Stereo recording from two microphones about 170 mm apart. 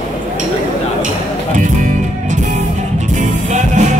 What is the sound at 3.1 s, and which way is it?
Music, 45° right (ahead or behind).